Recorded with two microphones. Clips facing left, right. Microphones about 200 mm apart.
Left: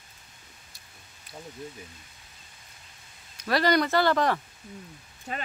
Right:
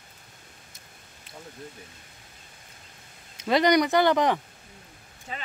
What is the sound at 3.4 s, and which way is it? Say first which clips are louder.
Speech: right 3 dB; 20° right (ahead or behind).